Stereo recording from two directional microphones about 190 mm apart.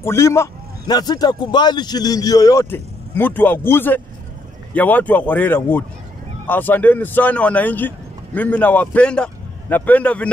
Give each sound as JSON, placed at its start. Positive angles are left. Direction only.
{"t": 0.0, "sound": "a man's voice", "side_deg": 15}